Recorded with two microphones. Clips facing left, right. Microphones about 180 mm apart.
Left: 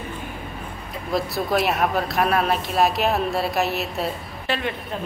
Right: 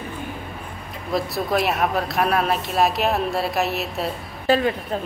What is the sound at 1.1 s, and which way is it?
Speech, centre (ahead or behind).